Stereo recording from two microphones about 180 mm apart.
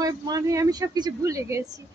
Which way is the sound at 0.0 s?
20° right (ahead or behind).